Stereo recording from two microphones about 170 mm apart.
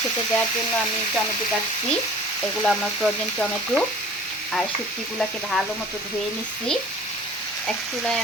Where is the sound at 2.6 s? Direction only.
Centre (ahead or behind).